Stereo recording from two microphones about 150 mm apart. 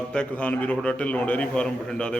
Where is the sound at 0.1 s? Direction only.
5° left (ahead or behind).